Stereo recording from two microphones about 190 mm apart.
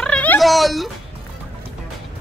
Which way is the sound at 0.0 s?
5° left (ahead or behind).